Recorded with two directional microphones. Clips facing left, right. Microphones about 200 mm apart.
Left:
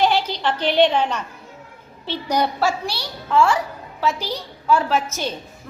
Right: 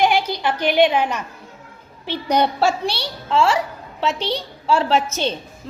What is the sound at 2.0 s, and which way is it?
A woman's voice, 20° right (ahead or behind).